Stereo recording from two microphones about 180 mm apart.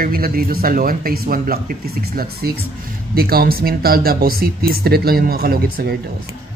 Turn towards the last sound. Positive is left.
turn(degrees=-60)  # may be behind; listen again after turning